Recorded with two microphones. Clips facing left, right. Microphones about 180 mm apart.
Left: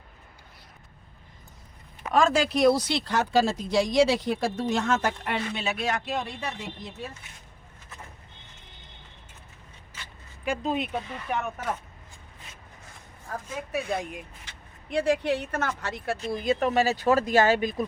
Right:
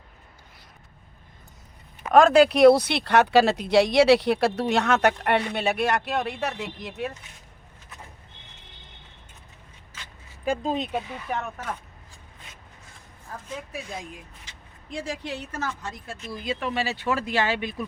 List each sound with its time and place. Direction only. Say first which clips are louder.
2.1 s speech: right 7 dB; 60° right (ahead or behind)
10.4 s speech: right 2 dB; 35° right (ahead or behind)
13.7 s speech: left 7 dB; 65° left (ahead or behind)
15.8 s speech: left 6 dB; 75° left (ahead or behind)
16.3 s speech: left 4 dB; 45° left (ahead or behind)